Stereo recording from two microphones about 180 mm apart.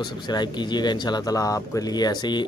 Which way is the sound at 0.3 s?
25° left (ahead or behind).